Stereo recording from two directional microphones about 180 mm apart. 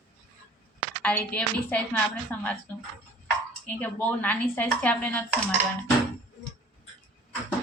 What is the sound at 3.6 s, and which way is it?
Speech, 10° left (ahead or behind).